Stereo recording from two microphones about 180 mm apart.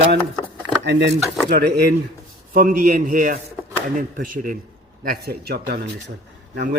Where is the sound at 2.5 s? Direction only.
55° right (ahead or behind).